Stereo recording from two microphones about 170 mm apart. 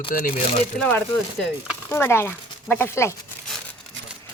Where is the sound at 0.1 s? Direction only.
55° left (ahead or behind).